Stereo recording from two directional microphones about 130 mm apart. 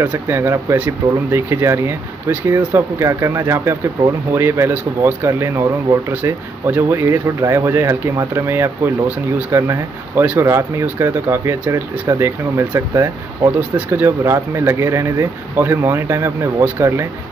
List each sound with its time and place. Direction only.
0.0 s speech: 15° right (ahead or behind)
13.6 s speech: 15° right (ahead or behind)